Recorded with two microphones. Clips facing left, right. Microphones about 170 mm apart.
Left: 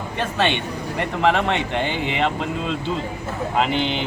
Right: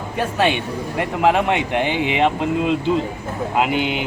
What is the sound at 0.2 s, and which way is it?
Speech, 10° right (ahead or behind).